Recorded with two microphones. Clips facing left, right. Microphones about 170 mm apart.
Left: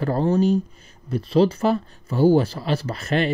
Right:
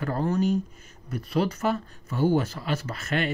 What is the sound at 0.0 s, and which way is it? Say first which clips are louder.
Speech: left 6 dB; 30° left (ahead or behind).